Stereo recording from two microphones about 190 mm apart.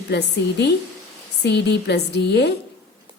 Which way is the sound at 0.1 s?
60° left (ahead or behind).